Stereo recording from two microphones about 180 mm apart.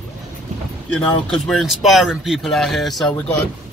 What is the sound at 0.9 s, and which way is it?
Speech, centre (ahead or behind).